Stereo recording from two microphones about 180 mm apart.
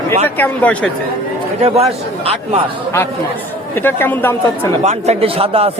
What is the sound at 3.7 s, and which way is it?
Speech, 10° left (ahead or behind).